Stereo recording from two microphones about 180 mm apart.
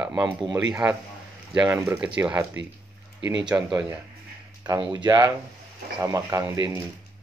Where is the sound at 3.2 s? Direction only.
90° right.